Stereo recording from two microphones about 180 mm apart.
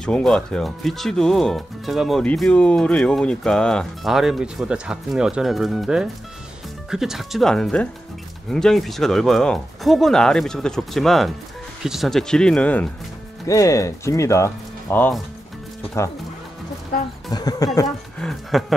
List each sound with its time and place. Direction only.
0.0 s speech: 5° left (ahead or behind)
13.5 s speech: 20° left (ahead or behind)
17.3 s speech: 20° left (ahead or behind)
17.8 s speech: centre (ahead or behind)